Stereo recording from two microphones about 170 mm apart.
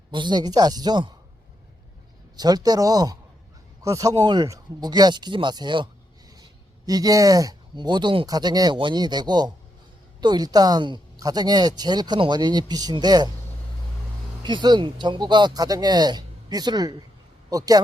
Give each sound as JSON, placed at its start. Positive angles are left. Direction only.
{"t": 0.1, "sound": "speech", "side_deg": -25}
{"t": 2.3, "sound": "speech", "side_deg": -25}
{"t": 14.4, "sound": "speech", "side_deg": -25}